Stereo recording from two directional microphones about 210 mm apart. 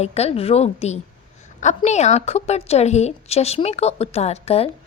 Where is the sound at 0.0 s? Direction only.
30° left (ahead or behind).